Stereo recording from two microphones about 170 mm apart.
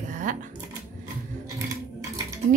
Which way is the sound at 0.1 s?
50° right (ahead or behind).